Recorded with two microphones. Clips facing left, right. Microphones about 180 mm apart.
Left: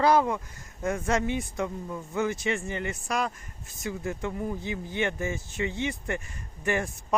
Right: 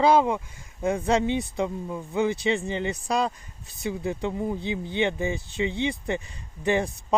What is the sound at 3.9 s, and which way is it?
Speech, 20° right (ahead or behind).